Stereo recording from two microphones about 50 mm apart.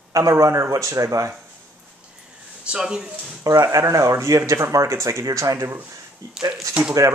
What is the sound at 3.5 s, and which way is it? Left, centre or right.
Speech, right.